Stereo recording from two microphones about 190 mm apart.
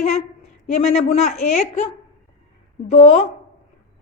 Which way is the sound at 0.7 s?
35° left (ahead or behind).